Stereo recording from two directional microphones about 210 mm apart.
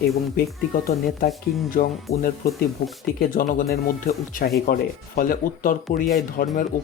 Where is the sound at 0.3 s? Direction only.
45° left (ahead or behind).